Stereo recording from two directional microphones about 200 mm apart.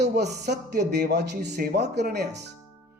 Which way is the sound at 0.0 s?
55° right (ahead or behind).